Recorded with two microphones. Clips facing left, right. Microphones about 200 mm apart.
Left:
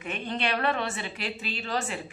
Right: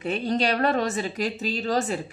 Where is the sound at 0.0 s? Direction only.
35° right (ahead or behind).